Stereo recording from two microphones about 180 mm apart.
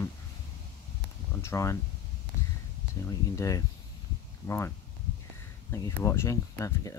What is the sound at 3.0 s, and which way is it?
Speech, 20° left (ahead or behind).